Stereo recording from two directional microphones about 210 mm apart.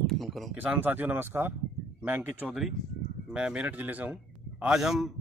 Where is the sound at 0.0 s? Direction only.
Centre (ahead or behind).